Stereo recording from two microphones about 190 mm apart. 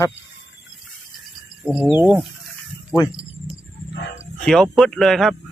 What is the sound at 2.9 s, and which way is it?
Speech, 20° left (ahead or behind).